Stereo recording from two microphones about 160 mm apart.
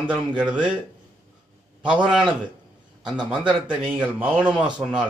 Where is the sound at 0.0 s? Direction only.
10° right (ahead or behind).